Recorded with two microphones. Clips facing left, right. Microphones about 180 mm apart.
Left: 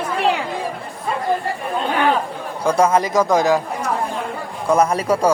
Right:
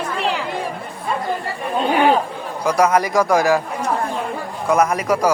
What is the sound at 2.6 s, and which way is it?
Speech, 25° left (ahead or behind).